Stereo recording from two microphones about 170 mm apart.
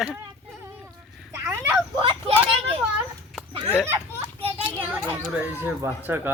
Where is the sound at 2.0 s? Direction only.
30° right (ahead or behind).